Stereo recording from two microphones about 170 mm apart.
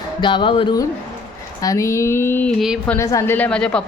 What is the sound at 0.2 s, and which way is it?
A woman's voice, 25° left (ahead or behind).